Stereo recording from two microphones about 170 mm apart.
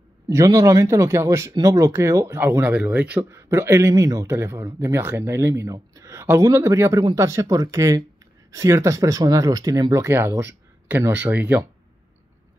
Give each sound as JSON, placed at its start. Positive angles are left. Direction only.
{"t": 0.3, "sound": "speech", "side_deg": -20}